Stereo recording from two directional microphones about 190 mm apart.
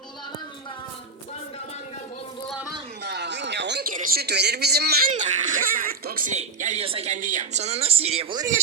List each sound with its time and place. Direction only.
3.0 s a sound: 65° right (ahead or behind)
3.9 s a man's voice: 55° right (ahead or behind)
5.1 s speech: 40° right (ahead or behind)
8.4 s a man's voice: 15° right (ahead or behind)